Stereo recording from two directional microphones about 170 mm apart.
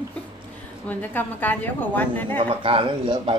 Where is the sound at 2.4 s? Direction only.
30° right (ahead or behind).